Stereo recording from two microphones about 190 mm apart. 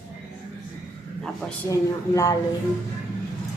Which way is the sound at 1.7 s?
15° left (ahead or behind).